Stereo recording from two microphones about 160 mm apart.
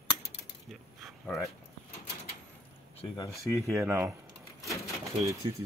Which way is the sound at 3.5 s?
20° right (ahead or behind).